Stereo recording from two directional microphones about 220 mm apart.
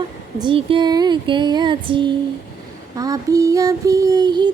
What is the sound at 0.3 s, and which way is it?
Female singing, 20° right (ahead or behind).